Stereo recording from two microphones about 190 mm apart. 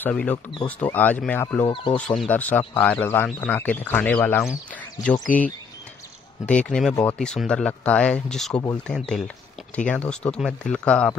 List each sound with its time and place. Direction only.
0.0 s speech: 5° left (ahead or behind)
1.7 s speech: 25° left (ahead or behind)
2.0 s speech: 5° left (ahead or behind)
6.4 s speech: 5° left (ahead or behind)